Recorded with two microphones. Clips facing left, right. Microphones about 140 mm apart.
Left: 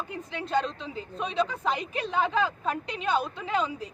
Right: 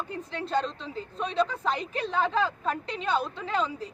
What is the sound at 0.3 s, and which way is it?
Speech, 35° right (ahead or behind).